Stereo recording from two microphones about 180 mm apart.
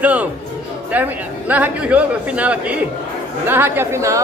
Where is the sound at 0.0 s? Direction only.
5° right (ahead or behind).